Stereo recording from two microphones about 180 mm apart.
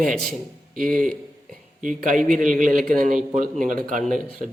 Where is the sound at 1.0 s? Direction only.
50° right (ahead or behind).